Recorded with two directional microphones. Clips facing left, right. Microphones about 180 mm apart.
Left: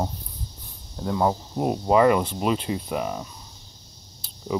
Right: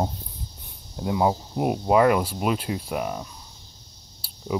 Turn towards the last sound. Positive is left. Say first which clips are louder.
# left 2 dB
turn(degrees=-10)  # may be behind; listen again after turning